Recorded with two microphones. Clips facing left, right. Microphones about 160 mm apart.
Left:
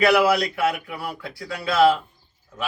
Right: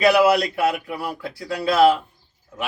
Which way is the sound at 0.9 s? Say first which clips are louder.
Right 3 dB; 35° right (ahead or behind).